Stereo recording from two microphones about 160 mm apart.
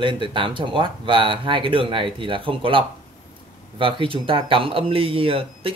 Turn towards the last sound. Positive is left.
turn(degrees=-35)  # may be behind; listen again after turning